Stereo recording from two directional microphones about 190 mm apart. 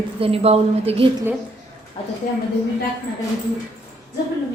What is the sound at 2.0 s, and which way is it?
Speech, 30° left (ahead or behind).